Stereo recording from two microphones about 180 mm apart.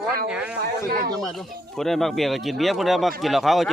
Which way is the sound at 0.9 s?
55° right (ahead or behind).